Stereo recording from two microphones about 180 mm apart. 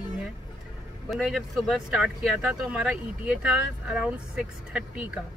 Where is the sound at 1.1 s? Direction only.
Centre (ahead or behind).